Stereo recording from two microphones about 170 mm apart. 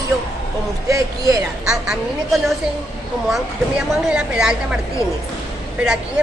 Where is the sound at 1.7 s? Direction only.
5° right (ahead or behind).